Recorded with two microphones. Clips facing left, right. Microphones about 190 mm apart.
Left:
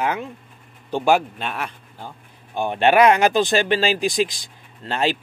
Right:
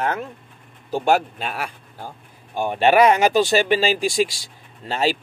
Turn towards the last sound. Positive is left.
turn(degrees=-10)  # may be behind; listen again after turning